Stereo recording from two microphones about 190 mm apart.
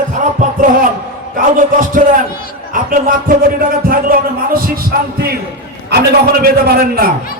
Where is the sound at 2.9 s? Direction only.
45° right (ahead or behind).